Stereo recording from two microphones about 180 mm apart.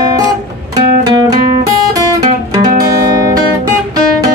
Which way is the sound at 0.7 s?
25° right (ahead or behind).